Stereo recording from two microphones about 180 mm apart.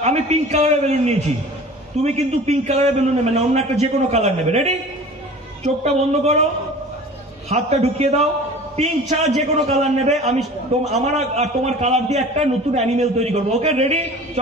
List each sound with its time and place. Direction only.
0.0 s a man's voice: 35° right (ahead or behind)
7.4 s a man's voice: 35° right (ahead or behind)